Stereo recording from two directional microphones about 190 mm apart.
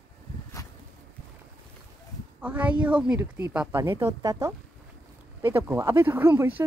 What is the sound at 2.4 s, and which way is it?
Speech, 10° right (ahead or behind).